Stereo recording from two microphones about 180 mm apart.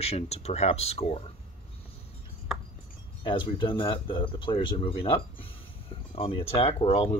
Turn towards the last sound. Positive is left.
turn(degrees=30)  # may be behind; listen again after turning